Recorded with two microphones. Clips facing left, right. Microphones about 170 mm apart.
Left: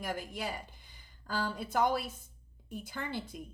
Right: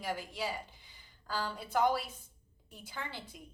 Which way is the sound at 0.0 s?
50° left (ahead or behind).